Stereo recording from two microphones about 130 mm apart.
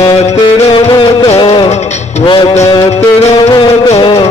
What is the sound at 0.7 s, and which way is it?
Music, 40° left (ahead or behind).